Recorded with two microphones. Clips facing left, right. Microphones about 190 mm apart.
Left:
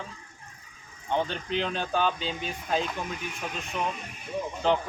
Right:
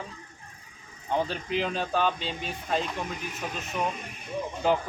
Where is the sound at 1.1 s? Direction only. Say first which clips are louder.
Even; 5° right (ahead or behind).